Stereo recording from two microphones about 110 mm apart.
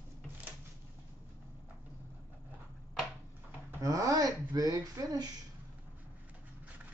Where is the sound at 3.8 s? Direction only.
30° right (ahead or behind).